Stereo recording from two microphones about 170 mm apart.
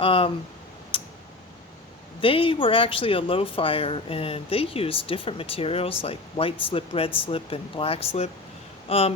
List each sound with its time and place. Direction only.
0.0 s speech: 30° left (ahead or behind)
0.9 s tick: 30° left (ahead or behind)
2.2 s speech: 30° left (ahead or behind)